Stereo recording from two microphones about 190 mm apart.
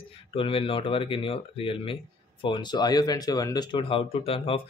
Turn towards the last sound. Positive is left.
turn(degrees=30)  # may be behind; listen again after turning